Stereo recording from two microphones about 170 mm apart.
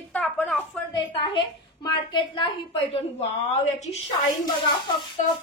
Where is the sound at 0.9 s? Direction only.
30° left (ahead or behind).